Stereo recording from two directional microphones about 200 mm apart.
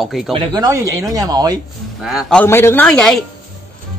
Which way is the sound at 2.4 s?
10° left (ahead or behind).